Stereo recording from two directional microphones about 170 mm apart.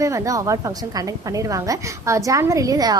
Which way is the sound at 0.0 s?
20° right (ahead or behind).